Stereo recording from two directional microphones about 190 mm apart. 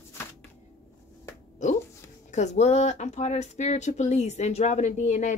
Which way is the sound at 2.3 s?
35° left (ahead or behind).